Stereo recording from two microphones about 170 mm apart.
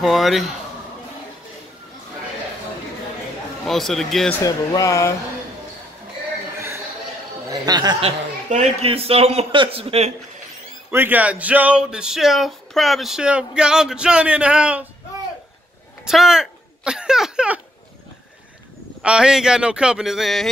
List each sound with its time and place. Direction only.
0.0 s speech: centre (ahead or behind)
3.6 s speech: centre (ahead or behind)
4.4 s speech: 20° left (ahead or behind)
7.4 s speech: 20° right (ahead or behind)
8.0 s a man's voice: 40° right (ahead or behind)
10.9 s speech: 10° right (ahead or behind)
16.1 s a sound: 5° right (ahead or behind)
19.0 s speech: 5° right (ahead or behind)